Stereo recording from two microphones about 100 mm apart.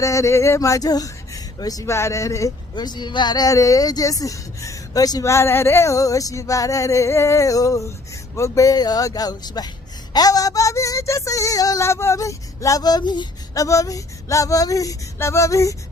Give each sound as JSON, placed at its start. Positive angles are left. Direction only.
{"t": 0.0, "sound": "speech", "side_deg": 30}